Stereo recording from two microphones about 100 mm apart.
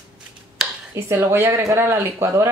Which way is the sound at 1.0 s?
25° right (ahead or behind).